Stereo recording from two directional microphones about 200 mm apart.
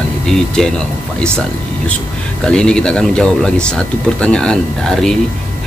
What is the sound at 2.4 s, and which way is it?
A man's voice, 5° left (ahead or behind).